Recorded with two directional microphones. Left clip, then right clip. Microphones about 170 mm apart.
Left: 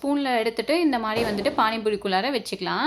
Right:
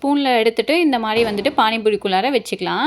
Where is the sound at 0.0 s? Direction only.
20° right (ahead or behind).